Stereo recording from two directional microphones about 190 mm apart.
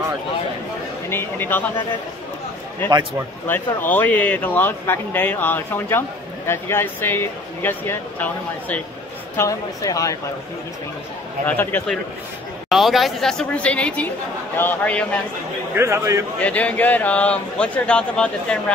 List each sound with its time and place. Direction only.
1.1 s speech: 10° left (ahead or behind)
2.8 s speech: 10° left (ahead or behind)
11.4 s speech: 10° left (ahead or behind)
12.6 s a woman's voice: centre (ahead or behind)
15.7 s speech: 15° right (ahead or behind)
16.3 s speech: 5° left (ahead or behind)